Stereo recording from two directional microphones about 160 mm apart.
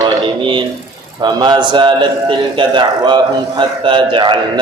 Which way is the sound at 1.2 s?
25° right (ahead or behind).